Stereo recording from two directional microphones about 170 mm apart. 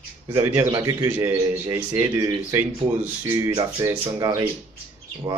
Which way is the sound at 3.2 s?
15° right (ahead or behind).